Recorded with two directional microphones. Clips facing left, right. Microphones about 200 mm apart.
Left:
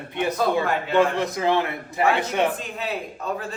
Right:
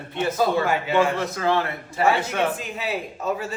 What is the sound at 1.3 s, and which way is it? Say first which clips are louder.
A man's voice: left 1 dB; 20° left (ahead or behind).